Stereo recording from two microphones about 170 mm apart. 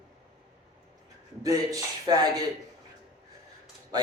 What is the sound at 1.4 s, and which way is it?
A man's voice, 20° right (ahead or behind).